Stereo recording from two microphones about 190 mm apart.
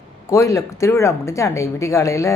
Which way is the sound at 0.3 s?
15° left (ahead or behind).